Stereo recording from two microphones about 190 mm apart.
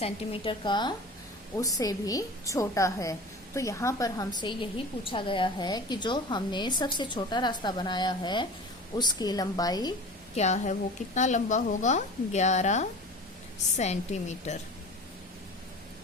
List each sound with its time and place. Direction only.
0.0 s a woman's voice: 25° left (ahead or behind)
10.3 s a woman's voice: 35° left (ahead or behind)